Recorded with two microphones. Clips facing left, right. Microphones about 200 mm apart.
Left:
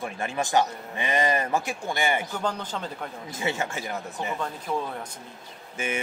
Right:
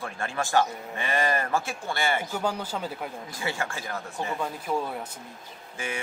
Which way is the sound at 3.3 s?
20° left (ahead or behind).